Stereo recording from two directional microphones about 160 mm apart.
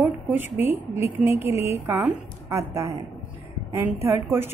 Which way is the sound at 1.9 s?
15° right (ahead or behind).